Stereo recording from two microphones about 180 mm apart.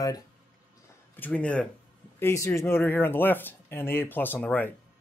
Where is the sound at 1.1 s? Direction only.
10° left (ahead or behind).